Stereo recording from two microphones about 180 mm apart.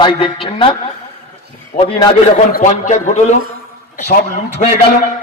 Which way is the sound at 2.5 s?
45° left (ahead or behind).